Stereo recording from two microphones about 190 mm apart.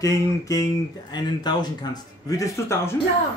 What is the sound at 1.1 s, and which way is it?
Speech, 20° left (ahead or behind).